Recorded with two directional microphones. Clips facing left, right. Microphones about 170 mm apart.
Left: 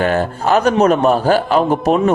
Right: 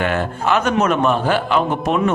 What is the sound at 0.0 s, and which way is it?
A man's voice, 35° left (ahead or behind).